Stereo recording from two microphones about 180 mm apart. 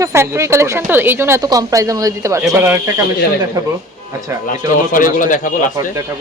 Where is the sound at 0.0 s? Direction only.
15° right (ahead or behind).